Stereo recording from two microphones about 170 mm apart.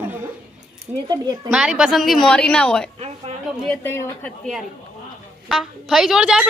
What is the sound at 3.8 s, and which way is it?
Speech, 15° left (ahead or behind).